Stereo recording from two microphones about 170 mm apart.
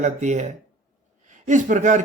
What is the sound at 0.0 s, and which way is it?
Speech, 45° right (ahead or behind).